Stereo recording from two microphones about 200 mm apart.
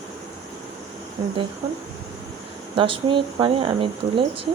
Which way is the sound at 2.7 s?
25° right (ahead or behind).